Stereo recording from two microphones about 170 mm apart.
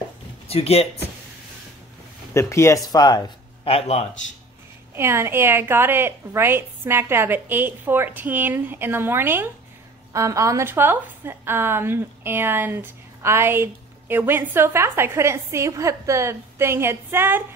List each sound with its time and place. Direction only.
0.5 s speech: 35° left (ahead or behind)
2.3 s speech: 15° left (ahead or behind)
3.7 s speech: 40° left (ahead or behind)
4.9 s a woman's voice: 15° right (ahead or behind)